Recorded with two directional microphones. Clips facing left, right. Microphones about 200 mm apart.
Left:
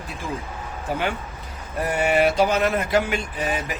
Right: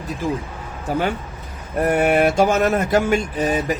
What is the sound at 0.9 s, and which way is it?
Speech, 45° right (ahead or behind).